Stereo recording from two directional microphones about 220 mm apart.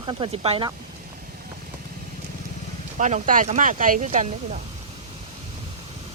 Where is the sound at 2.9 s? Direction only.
35° right (ahead or behind).